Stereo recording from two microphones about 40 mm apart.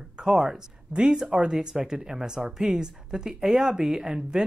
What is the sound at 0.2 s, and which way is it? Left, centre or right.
Speech, centre.